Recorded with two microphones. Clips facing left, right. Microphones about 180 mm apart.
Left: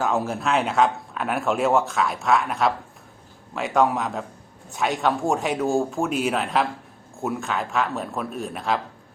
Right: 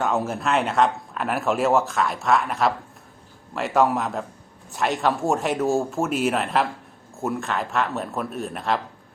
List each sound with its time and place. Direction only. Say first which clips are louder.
0.0 s speech: even; centre (ahead or behind)